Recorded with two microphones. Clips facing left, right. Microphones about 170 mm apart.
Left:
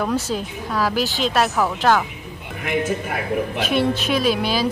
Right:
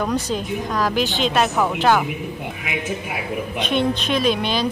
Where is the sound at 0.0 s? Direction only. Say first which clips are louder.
Even; 5° left (ahead or behind).